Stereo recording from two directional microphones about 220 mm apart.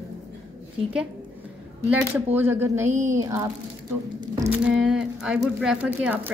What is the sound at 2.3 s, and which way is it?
Speech, 10° right (ahead or behind).